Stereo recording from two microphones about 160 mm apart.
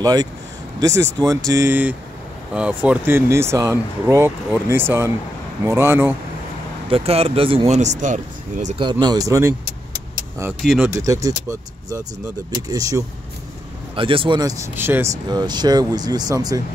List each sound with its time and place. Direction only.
0.0 s speech: 25° right (ahead or behind)
6.9 s speech: 40° right (ahead or behind)
9.0 s speech: 25° right (ahead or behind)
10.6 s speech: 5° right (ahead or behind)
10.9 s speech: 20° right (ahead or behind)
13.9 s speech: 35° right (ahead or behind); by 15.1 s 15° right (ahead or behind)
15.2 s speech: 25° right (ahead or behind)